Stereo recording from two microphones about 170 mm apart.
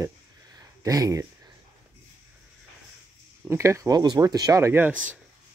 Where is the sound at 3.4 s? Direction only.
15° right (ahead or behind).